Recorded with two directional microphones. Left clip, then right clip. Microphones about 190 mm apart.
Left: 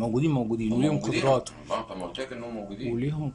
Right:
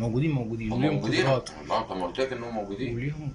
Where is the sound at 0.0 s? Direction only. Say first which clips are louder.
Left 3 dB; 10° left (ahead or behind).